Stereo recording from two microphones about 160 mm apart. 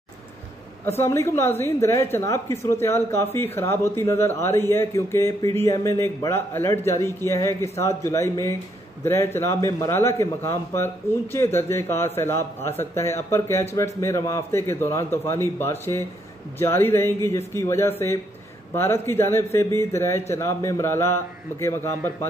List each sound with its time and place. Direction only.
0.8 s a man's voice: 15° left (ahead or behind)